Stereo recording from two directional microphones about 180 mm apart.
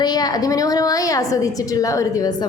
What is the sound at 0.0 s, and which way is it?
A woman's voice, 20° left (ahead or behind).